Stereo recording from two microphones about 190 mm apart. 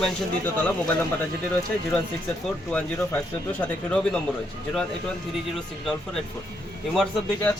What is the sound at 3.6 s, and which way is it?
Speech, 5° left (ahead or behind).